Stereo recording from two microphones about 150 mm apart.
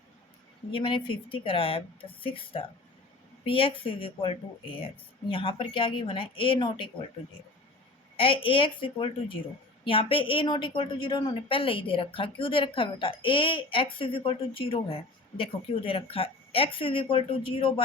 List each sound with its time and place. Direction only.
0.7 s a woman's voice: 35° left (ahead or behind)
8.1 s a woman's voice: 35° left (ahead or behind)